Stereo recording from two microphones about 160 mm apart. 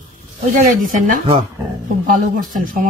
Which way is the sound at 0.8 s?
55° right (ahead or behind).